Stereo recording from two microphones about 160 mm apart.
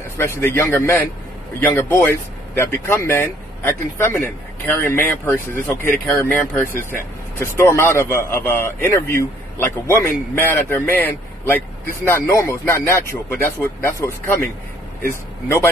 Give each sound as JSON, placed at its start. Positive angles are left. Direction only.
{"t": 0.2, "sound": "a man's voice", "side_deg": 15}
{"t": 15.4, "sound": "a man's voice", "side_deg": 15}